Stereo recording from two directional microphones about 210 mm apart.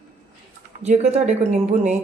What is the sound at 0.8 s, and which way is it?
Speech, 30° right (ahead or behind).